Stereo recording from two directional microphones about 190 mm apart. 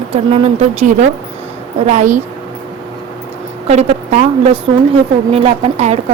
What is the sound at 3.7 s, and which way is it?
A woman's voice, 35° right (ahead or behind).